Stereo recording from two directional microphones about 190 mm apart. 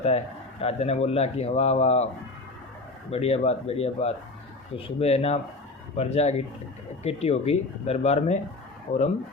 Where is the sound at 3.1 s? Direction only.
35° left (ahead or behind).